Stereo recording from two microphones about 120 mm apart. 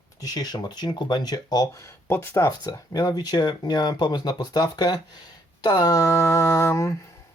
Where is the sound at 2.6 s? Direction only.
30° left (ahead or behind).